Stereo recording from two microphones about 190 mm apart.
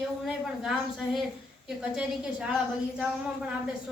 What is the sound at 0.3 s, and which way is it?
Speech, centre (ahead or behind).